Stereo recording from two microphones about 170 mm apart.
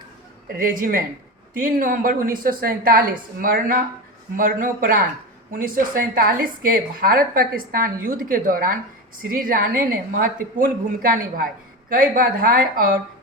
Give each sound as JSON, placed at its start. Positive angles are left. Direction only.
{"t": 0.6, "sound": "a woman's voice", "side_deg": -55}